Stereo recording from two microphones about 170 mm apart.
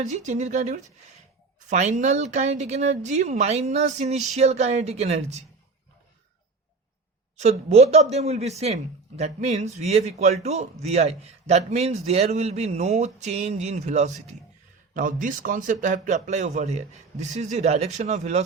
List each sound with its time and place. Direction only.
0.0 s a man's voice: 45° right (ahead or behind)
7.3 s a man's voice: 40° right (ahead or behind)